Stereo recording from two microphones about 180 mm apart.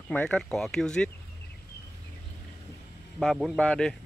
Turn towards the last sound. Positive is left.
turn(degrees=5)  # may be behind; listen again after turning